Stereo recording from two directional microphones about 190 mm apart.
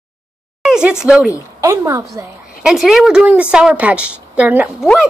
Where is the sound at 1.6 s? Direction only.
15° right (ahead or behind).